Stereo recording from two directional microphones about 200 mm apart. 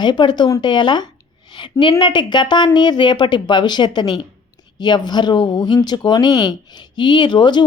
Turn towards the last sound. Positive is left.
turn(degrees=20)  # may be behind; listen again after turning